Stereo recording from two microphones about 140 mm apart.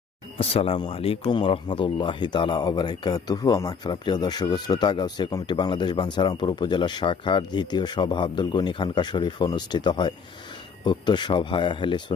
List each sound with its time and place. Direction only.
0.3 s speech: 45° left (ahead or behind)